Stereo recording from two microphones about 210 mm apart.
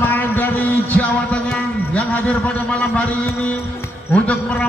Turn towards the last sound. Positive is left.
turn(degrees=5)  # may be behind; listen again after turning